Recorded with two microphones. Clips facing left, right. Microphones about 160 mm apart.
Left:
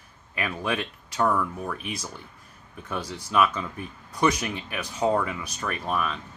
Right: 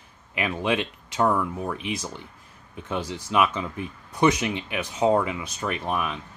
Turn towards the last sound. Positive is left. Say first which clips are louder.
# right 1 dB
turn(degrees=-15)  # may be behind; listen again after turning